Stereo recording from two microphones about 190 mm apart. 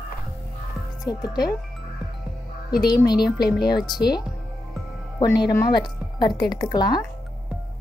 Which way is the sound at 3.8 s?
20° left (ahead or behind).